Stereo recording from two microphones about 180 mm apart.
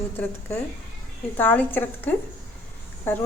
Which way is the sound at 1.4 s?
10° left (ahead or behind).